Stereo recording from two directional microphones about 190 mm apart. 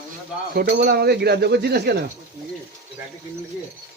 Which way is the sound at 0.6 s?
60° right (ahead or behind).